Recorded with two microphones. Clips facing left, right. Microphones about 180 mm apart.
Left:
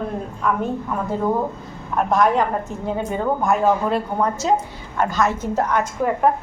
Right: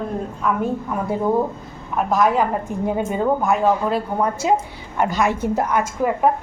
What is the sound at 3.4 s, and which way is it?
A woman's voice, centre (ahead or behind).